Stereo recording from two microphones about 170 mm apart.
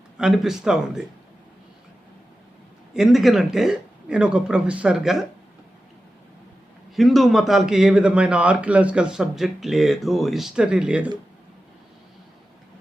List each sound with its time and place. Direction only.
0.2 s a man's voice: 5° right (ahead or behind)
2.9 s a man's voice: centre (ahead or behind)
6.9 s a man's voice: centre (ahead or behind)